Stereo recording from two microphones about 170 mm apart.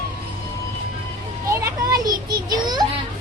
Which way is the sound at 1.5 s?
20° right (ahead or behind).